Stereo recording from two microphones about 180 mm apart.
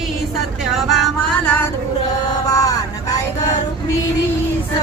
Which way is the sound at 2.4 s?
20° left (ahead or behind).